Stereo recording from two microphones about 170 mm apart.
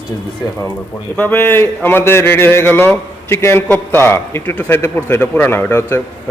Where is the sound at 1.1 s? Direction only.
10° left (ahead or behind).